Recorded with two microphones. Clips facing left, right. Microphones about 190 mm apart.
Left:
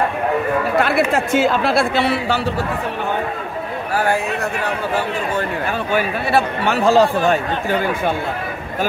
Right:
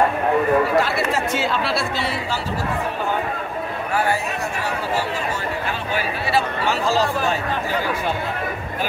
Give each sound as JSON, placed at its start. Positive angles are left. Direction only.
{"t": 0.7, "sound": "speech", "side_deg": 55}
{"t": 5.9, "sound": "speech", "side_deg": 55}